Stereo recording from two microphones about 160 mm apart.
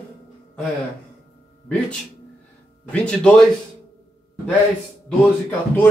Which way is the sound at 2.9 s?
5° left (ahead or behind).